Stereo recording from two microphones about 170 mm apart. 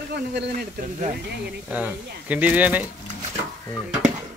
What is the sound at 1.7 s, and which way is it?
Speech, 10° right (ahead or behind).